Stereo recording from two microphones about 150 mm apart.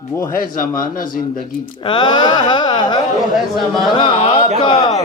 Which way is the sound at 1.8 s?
30° left (ahead or behind).